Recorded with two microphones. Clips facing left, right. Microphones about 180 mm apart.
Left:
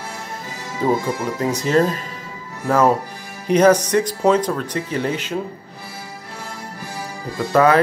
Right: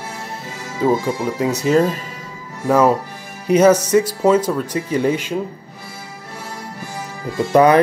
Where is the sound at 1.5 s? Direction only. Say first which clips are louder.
Right 2 dB; 10° right (ahead or behind).